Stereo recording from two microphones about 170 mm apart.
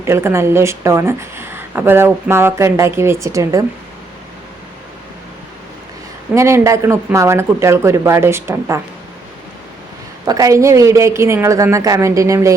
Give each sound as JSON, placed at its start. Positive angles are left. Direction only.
{"t": 0.0, "sound": "speech", "side_deg": -15}
{"t": 6.3, "sound": "speech", "side_deg": -15}
{"t": 10.2, "sound": "speech", "side_deg": -20}